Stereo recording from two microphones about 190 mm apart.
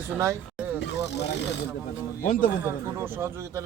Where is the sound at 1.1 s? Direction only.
65° left (ahead or behind).